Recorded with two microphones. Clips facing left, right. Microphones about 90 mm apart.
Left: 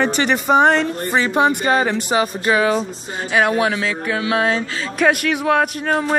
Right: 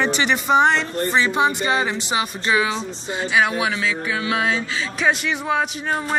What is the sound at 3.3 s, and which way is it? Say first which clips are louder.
Speech: left 4 dB; 50° left (ahead or behind).